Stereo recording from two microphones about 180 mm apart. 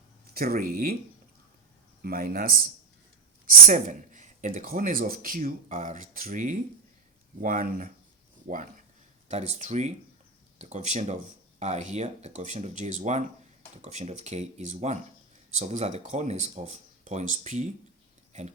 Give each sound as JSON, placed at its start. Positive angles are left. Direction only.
{"t": 0.3, "sound": "speech", "side_deg": -55}
{"t": 2.0, "sound": "speech", "side_deg": -55}
{"t": 9.3, "sound": "speech", "side_deg": -40}